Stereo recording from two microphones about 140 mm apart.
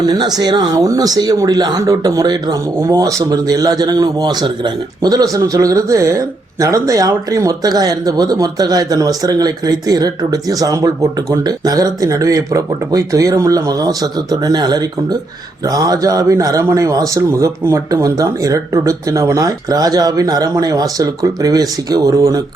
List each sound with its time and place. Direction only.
0.0 s speech: 30° right (ahead or behind)